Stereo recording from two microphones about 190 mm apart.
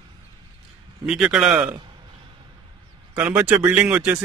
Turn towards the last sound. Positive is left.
turn(degrees=-10)  # may be behind; listen again after turning